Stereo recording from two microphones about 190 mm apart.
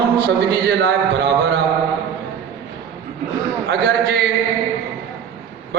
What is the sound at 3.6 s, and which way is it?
Speech, 65° right (ahead or behind).